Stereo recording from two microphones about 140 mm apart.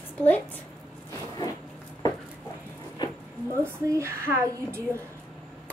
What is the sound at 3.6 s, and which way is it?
A woman's voice, 20° right (ahead or behind).